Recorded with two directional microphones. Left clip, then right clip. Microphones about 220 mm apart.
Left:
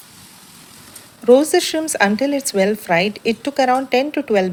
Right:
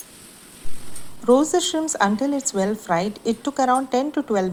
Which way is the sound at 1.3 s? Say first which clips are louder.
Left 5 dB; 35° left (ahead or behind).